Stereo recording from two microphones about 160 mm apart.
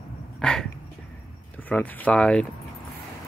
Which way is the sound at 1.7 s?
10° left (ahead or behind).